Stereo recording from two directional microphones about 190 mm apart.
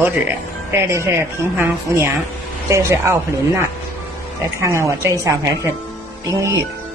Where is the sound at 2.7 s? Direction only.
15° right (ahead or behind).